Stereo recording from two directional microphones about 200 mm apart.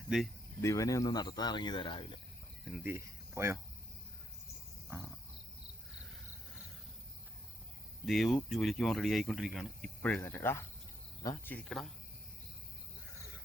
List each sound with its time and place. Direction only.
0.1 s speech: 5° right (ahead or behind)
0.6 s speech: 15° left (ahead or behind)
2.7 s speech: 10° right (ahead or behind)
8.0 s speech: centre (ahead or behind)